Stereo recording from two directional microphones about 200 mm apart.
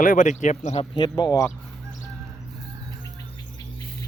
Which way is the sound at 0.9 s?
20° left (ahead or behind).